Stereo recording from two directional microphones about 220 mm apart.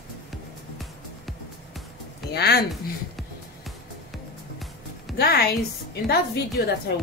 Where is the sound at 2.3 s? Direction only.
45° left (ahead or behind).